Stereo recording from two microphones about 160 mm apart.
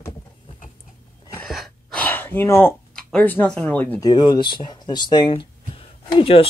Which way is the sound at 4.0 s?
25° left (ahead or behind).